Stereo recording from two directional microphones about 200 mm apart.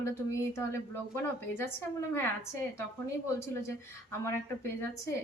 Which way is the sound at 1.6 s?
10° left (ahead or behind).